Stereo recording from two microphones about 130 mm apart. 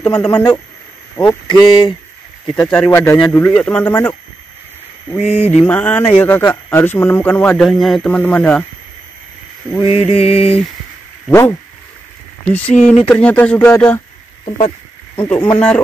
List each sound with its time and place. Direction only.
0.0 s speech: 5° left (ahead or behind)
0.3 s a sound: 35° left (ahead or behind)
2.5 s speech: 10° left (ahead or behind)
5.5 s speech: 10° left (ahead or behind)
9.8 s mantra: 50° left (ahead or behind)
11.2 s speech: 20° left (ahead or behind)
15.2 s speech: 15° left (ahead or behind)